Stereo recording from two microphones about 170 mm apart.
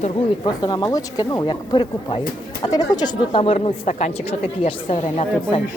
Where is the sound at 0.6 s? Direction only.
25° left (ahead or behind).